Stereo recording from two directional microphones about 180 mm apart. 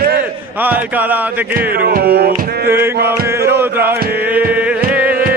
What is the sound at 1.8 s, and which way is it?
Music, 60° right (ahead or behind).